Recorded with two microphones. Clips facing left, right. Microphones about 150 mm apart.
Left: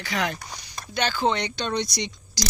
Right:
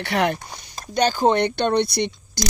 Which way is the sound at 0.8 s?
40° right (ahead or behind).